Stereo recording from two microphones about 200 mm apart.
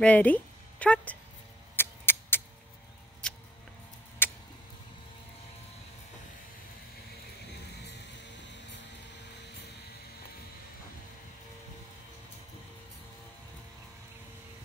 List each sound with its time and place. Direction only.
0.0 s speech: 5° left (ahead or behind)
1.8 s a sound: 10° left (ahead or behind)
4.2 s tick-tock: 10° left (ahead or behind)